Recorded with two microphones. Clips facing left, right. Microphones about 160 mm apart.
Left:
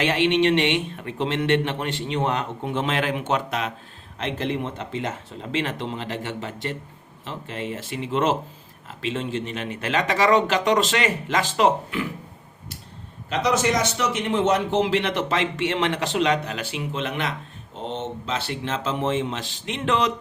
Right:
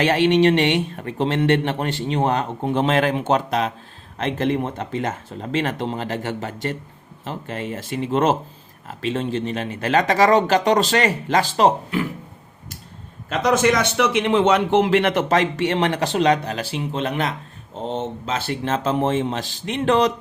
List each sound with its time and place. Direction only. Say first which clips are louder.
0.0 s speech: right 4 dB; 40° right (ahead or behind)
4.2 s a man's voice: right 5 dB; 50° right (ahead or behind)
13.3 s a man's voice: right 4 dB; 50° right (ahead or behind)